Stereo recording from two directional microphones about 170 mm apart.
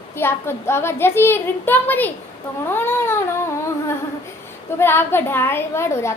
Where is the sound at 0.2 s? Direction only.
15° left (ahead or behind).